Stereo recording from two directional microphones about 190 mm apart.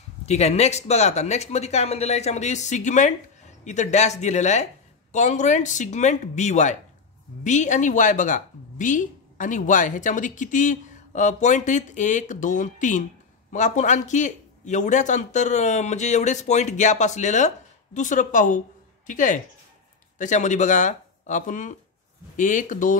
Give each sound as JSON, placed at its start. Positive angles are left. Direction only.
{"t": 0.3, "sound": "a woman's voice", "side_deg": 35}